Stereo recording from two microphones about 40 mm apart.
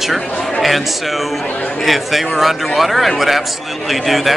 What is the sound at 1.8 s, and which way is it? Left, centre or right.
Speech, centre.